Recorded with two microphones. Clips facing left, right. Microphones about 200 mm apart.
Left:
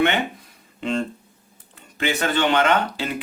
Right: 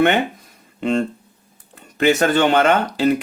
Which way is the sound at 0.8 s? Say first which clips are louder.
Right 5 dB; 50° right (ahead or behind).